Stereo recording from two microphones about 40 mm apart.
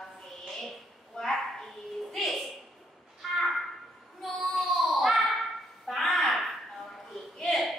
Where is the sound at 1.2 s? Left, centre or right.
Centre.